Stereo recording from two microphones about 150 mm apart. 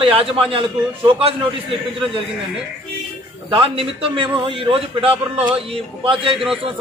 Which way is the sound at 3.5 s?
35° right (ahead or behind).